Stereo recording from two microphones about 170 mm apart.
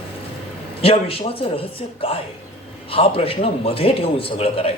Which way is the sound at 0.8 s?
35° left (ahead or behind).